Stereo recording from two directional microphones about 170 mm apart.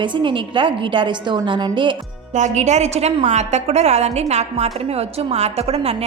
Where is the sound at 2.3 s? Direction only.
45° right (ahead or behind).